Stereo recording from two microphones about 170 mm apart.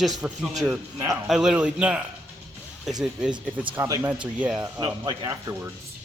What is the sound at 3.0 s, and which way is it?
Speech, 5° right (ahead or behind).